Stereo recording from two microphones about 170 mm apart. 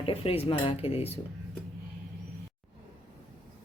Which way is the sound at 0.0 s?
35° left (ahead or behind).